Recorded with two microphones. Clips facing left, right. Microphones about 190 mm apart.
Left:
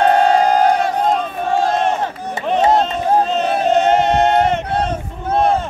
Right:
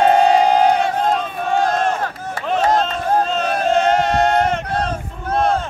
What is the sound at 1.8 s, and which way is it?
Crowd, 20° left (ahead or behind).